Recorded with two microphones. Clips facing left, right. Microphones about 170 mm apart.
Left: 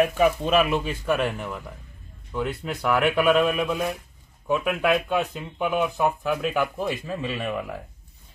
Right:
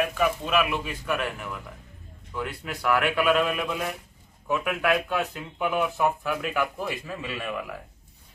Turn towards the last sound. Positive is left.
turn(degrees=25)  # may be behind; listen again after turning